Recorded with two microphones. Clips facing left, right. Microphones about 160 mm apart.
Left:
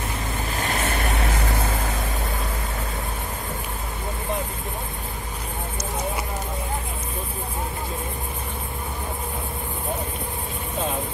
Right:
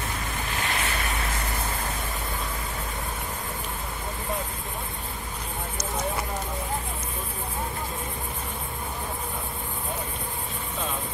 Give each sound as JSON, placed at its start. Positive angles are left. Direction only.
{"t": 0.6, "sound": "waves", "side_deg": 45}